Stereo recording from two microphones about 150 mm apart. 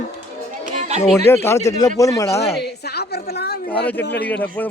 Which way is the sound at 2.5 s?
90° left.